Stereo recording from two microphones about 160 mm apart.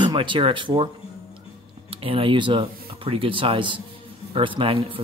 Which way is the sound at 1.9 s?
35° right (ahead or behind).